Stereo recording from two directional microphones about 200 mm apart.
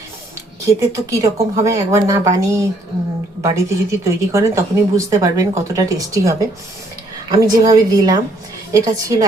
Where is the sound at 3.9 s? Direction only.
15° right (ahead or behind).